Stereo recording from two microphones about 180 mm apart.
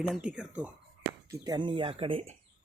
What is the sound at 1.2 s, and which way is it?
Speech, 20° right (ahead or behind).